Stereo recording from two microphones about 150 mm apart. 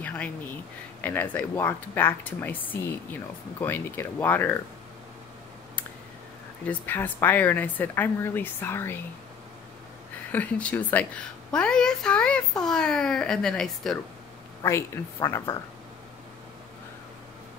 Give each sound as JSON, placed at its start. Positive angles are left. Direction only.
{"t": 0.0, "sound": "speech", "side_deg": 10}
{"t": 6.7, "sound": "speech", "side_deg": 15}
{"t": 10.3, "sound": "a woman's voice", "side_deg": 10}
{"t": 14.6, "sound": "a woman's voice", "side_deg": 20}